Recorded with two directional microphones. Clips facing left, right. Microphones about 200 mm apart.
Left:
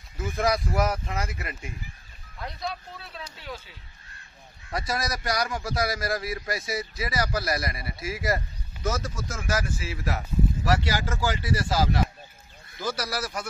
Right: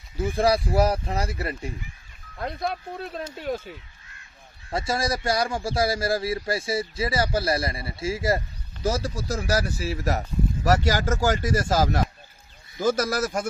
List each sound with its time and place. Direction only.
0.2 s speech: 30° right (ahead or behind)
2.3 s speech: 55° right (ahead or behind)
4.6 s a man's voice: 30° right (ahead or behind); by 13.5 s 45° right (ahead or behind)